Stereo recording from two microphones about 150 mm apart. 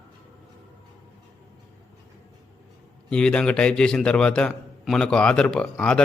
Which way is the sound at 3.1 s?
5° left (ahead or behind).